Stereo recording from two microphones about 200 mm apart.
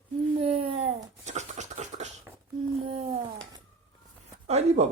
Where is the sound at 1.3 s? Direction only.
35° right (ahead or behind).